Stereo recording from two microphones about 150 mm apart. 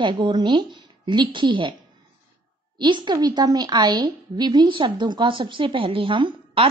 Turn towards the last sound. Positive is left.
turn(degrees=-35)  # may be behind; listen again after turning